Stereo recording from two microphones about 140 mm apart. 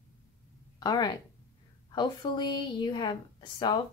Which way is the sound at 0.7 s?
30° left (ahead or behind).